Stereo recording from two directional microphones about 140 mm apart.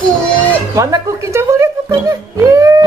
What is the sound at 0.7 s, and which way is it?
Speech, 20° right (ahead or behind).